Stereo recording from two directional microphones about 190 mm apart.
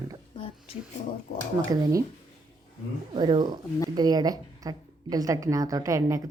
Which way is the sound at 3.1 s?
25° right (ahead or behind).